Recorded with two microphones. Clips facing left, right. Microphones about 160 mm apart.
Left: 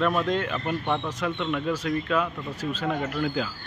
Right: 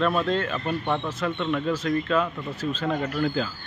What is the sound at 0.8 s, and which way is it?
Speech, 5° right (ahead or behind).